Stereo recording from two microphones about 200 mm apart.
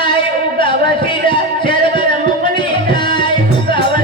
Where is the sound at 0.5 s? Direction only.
25° left (ahead or behind).